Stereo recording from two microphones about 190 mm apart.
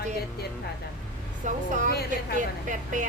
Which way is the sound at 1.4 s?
40° right (ahead or behind).